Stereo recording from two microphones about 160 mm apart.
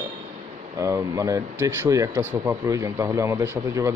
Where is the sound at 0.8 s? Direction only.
20° right (ahead or behind).